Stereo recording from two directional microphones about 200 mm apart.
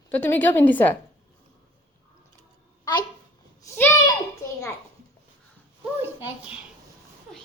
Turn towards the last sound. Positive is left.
turn(degrees=-10)  # may be behind; listen again after turning